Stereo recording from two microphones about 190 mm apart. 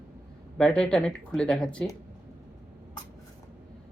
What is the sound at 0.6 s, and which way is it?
Speech, 5° left (ahead or behind).